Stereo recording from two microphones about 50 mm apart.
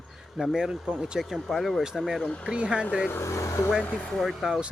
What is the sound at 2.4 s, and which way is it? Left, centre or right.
Speech, right.